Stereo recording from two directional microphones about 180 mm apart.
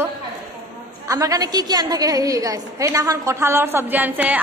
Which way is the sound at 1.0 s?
20° right (ahead or behind).